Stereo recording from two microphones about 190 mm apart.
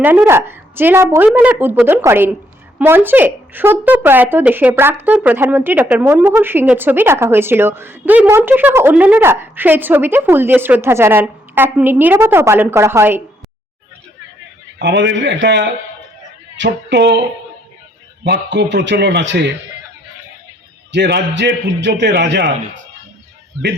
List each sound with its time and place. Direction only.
0.0 s a woman's voice: 10° right (ahead or behind)
14.8 s a man's voice: 65° right (ahead or behind)
18.3 s a man's voice: 65° right (ahead or behind)
20.9 s a man's voice: 65° right (ahead or behind)